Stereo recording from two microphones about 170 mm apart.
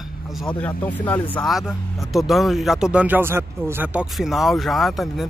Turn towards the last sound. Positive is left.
turn(degrees=0)  # may be behind; listen again after turning